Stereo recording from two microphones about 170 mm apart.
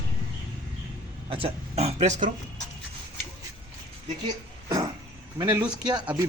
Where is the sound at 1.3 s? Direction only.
35° right (ahead or behind).